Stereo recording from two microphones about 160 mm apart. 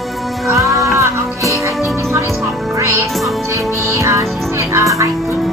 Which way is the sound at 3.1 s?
Centre (ahead or behind).